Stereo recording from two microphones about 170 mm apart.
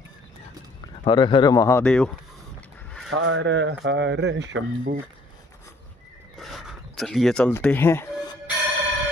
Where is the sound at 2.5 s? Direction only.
5° left (ahead or behind).